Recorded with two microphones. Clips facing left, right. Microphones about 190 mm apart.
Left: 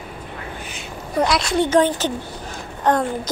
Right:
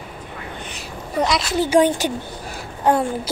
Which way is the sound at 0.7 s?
Centre (ahead or behind).